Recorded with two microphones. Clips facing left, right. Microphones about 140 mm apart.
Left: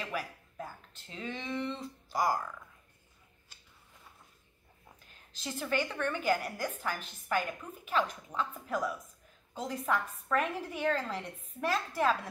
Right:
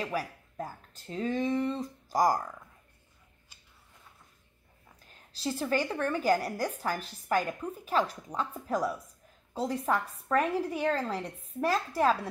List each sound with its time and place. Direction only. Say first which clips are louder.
0.0 s a woman's voice: right 4 dB; 40° right (ahead or behind)
5.3 s a woman's voice: right 4 dB; 35° right (ahead or behind)